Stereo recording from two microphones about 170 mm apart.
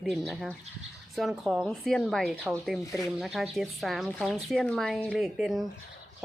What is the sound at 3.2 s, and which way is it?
Speech, centre (ahead or behind).